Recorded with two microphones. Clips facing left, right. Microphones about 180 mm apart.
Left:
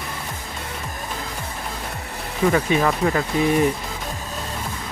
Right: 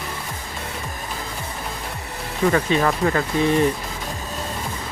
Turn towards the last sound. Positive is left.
turn(degrees=5)  # may be behind; listen again after turning